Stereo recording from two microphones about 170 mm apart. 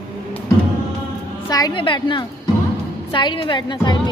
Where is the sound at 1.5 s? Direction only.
20° left (ahead or behind).